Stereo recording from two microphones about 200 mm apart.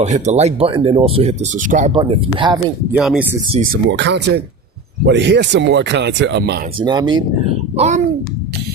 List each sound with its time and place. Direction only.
0.0 s speech: 35° right (ahead or behind)
1.9 s speech: 25° right (ahead or behind)
2.9 s speech: 5° right (ahead or behind)
3.8 s speech: 65° right (ahead or behind)
6.7 s speech: 20° right (ahead or behind)